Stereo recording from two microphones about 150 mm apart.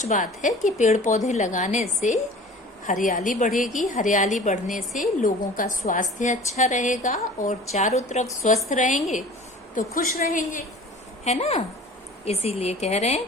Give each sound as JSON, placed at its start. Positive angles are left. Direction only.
{"t": 0.0, "sound": "a woman's voice", "side_deg": 55}
{"t": 3.5, "sound": "a woman's voice", "side_deg": 0}
{"t": 3.8, "sound": "a woman's voice", "side_deg": 60}
{"t": 9.7, "sound": "a woman's voice", "side_deg": 70}
{"t": 11.3, "sound": "a woman's voice", "side_deg": 45}